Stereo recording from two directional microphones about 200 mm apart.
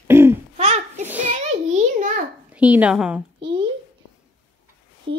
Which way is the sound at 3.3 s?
25° right (ahead or behind).